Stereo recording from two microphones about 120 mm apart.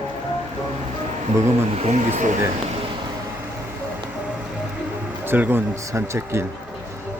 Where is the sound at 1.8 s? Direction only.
75° right (ahead or behind); by 2.4 s 90° right.